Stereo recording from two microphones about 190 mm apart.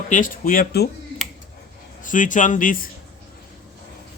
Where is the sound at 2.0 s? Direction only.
45° left (ahead or behind).